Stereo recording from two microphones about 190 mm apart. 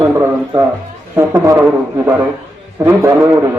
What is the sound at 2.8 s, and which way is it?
Speech, 15° right (ahead or behind).